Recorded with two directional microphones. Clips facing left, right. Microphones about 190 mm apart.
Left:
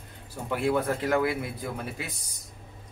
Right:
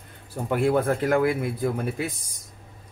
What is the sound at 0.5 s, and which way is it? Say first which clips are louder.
A man's voice: right 4 dB; 50° right (ahead or behind).